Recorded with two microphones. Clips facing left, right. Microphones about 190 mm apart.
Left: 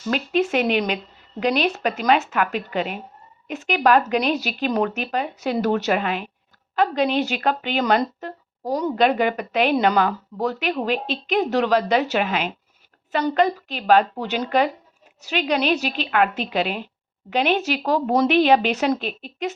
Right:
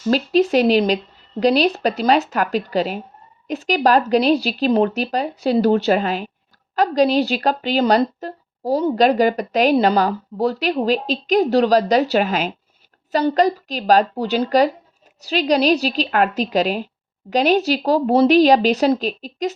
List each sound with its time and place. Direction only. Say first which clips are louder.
0.1 s a woman's voice: right 5 dB; 35° right (ahead or behind)